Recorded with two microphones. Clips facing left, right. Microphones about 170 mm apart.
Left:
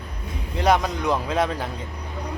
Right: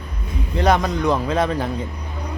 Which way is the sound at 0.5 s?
5° left (ahead or behind).